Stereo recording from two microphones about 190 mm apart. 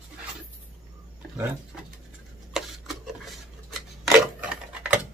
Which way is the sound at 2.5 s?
Centre (ahead or behind).